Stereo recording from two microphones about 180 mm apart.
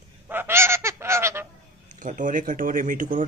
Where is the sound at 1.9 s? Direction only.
45° right (ahead or behind).